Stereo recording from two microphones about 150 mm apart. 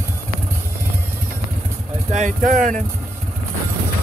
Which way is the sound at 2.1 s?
55° right (ahead or behind).